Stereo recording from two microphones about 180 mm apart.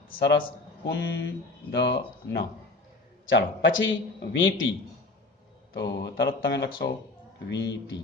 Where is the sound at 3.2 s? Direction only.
90° left.